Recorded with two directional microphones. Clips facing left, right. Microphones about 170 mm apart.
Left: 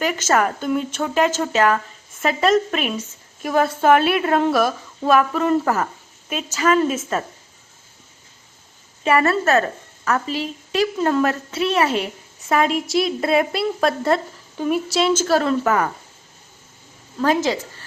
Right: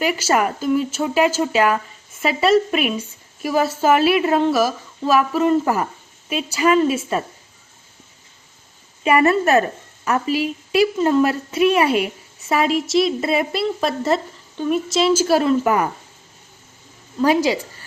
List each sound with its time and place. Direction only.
0.0 s a woman's voice: 10° right (ahead or behind)
9.0 s a woman's voice: 15° right (ahead or behind)
17.2 s a woman's voice: 10° right (ahead or behind)